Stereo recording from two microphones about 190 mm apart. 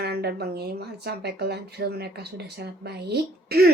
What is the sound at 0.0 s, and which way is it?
Speech, 60° right (ahead or behind).